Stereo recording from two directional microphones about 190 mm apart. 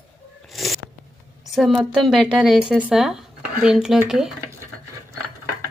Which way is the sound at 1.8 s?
Centre (ahead or behind).